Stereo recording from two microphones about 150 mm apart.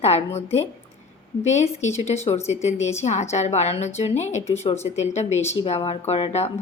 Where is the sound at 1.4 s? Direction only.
50° left (ahead or behind).